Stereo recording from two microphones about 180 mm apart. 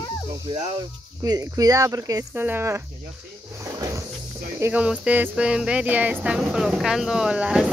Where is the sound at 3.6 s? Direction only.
15° right (ahead or behind).